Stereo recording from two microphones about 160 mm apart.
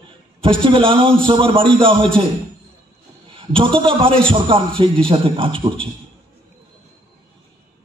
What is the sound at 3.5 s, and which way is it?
A man's voice, 35° right (ahead or behind).